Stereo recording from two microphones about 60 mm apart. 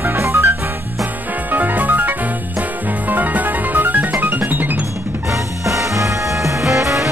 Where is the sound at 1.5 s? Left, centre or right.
Right.